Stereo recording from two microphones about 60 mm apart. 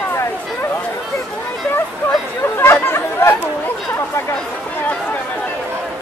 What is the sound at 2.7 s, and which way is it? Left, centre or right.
Chatter, left.